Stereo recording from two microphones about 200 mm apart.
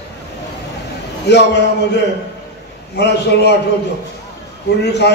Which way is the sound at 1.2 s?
55° left (ahead or behind).